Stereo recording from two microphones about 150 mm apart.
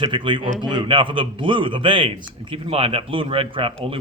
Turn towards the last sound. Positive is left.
turn(degrees=-35)  # may be behind; listen again after turning